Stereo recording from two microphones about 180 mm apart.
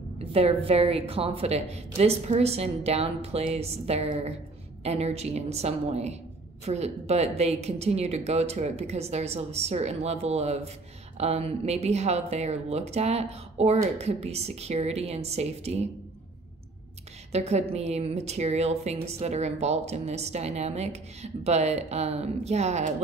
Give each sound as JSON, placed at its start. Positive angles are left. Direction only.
{"t": 0.2, "sound": "a woman's voice", "side_deg": -35}
{"t": 17.3, "sound": "a woman's voice", "side_deg": -35}